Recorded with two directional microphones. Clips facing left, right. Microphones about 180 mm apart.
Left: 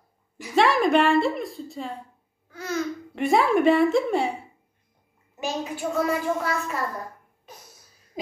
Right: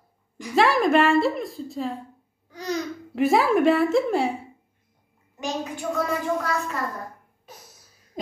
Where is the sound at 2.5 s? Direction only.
15° right (ahead or behind).